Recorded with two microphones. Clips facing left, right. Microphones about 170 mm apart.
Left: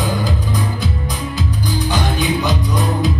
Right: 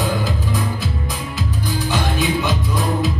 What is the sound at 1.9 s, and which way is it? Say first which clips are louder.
Music: even; centre (ahead or behind).